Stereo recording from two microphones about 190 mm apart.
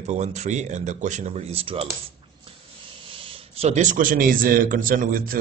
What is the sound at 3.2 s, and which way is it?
Speech, 30° right (ahead or behind).